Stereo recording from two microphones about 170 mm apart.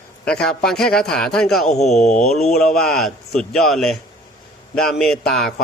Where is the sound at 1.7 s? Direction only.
40° left (ahead or behind).